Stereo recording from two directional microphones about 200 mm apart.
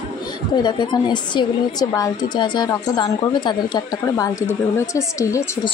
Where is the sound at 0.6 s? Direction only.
20° left (ahead or behind).